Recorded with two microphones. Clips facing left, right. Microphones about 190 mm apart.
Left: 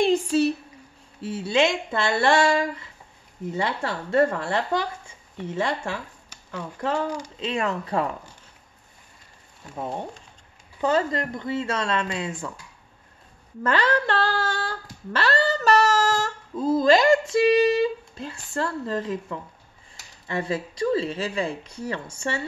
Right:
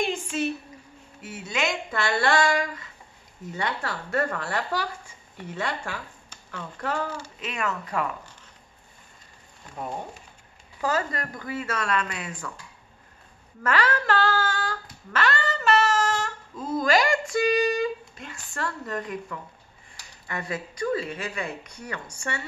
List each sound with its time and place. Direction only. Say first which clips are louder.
0.0 s a sound: left 7 dB; 35° left (ahead or behind)
1.2 s speech: left 7 dB; 30° left (ahead or behind)
6.3 s a sound: left 4 dB; 10° left (ahead or behind)
7.3 s female singing: left 4 dB; 30° left (ahead or behind)
10.8 s speech: left 5 dB; 25° left (ahead or behind)
13.6 s female singing: left 3 dB; 30° left (ahead or behind)
20.2 s speech: left 5 dB; 30° left (ahead or behind)